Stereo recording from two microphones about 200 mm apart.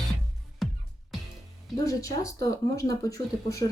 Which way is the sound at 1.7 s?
15° left (ahead or behind).